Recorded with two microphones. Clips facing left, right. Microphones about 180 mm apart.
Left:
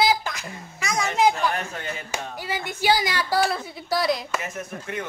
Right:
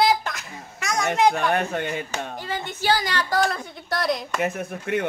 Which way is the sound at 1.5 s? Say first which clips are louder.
Right 7 dB; 65° right (ahead or behind).